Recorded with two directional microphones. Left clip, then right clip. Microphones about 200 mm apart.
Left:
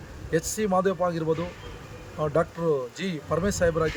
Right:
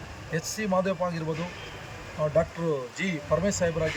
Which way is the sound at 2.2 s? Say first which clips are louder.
Left 1 dB; 25° left (ahead or behind).